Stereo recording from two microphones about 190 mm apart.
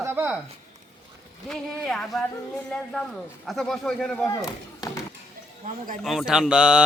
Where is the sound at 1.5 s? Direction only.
Centre (ahead or behind).